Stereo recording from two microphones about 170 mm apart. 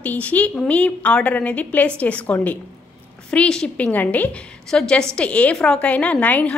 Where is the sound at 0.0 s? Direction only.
10° left (ahead or behind).